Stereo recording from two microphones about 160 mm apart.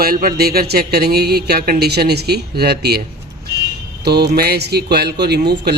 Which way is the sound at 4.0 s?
90° right.